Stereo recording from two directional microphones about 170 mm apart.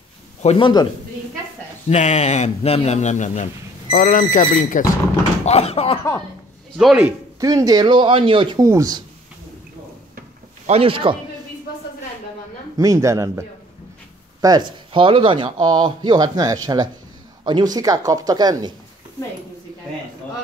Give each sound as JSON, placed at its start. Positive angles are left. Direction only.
{"t": 0.4, "sound": "a man's voice", "side_deg": 40}
{"t": 1.9, "sound": "a man's voice", "side_deg": 40}
{"t": 5.4, "sound": "a man's voice", "side_deg": 40}
{"t": 6.8, "sound": "speech", "side_deg": 0}
{"t": 7.3, "sound": "speech", "side_deg": -20}
{"t": 10.7, "sound": "speech", "side_deg": -30}
{"t": 12.7, "sound": "speech", "side_deg": -20}